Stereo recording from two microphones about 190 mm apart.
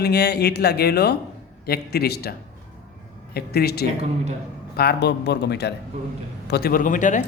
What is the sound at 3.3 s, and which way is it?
A man's voice, 55° left (ahead or behind).